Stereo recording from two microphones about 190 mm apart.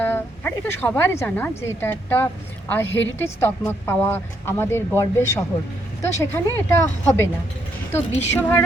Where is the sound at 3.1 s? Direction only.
15° left (ahead or behind).